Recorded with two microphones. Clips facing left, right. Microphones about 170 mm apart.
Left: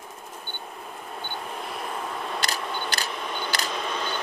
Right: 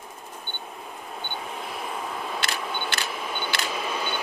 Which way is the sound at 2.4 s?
40° left (ahead or behind).